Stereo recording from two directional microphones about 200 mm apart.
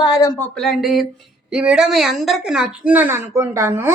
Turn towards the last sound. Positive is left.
turn(degrees=-15)  # may be behind; listen again after turning